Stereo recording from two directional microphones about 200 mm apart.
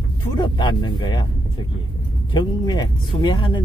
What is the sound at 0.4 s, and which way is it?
Speech, 25° left (ahead or behind).